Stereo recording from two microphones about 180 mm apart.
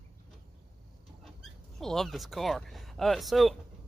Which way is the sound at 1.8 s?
Centre (ahead or behind).